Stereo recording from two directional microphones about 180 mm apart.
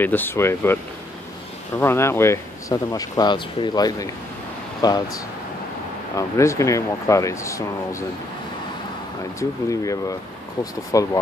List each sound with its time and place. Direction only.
0.0 s speech: 10° left (ahead or behind)
1.8 s speech: 15° left (ahead or behind)
6.1 s speech: 15° left (ahead or behind)
9.4 s speech: 20° left (ahead or behind)